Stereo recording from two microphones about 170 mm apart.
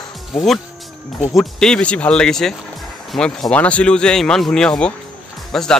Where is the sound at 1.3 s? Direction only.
Centre (ahead or behind).